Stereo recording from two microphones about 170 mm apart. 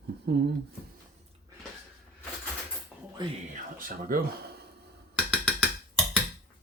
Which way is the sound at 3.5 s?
55° right (ahead or behind).